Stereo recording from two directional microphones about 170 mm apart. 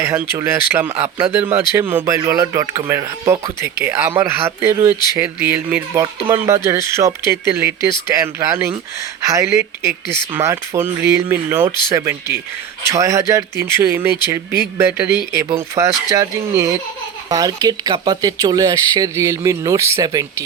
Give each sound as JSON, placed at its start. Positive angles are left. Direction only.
{"t": 0.0, "sound": "speech", "side_deg": -15}